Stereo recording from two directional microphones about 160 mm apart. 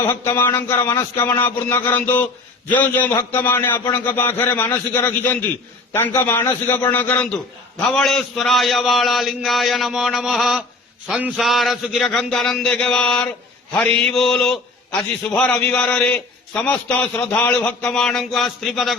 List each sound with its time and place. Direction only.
0.1 s a man's voice: 15° left (ahead or behind)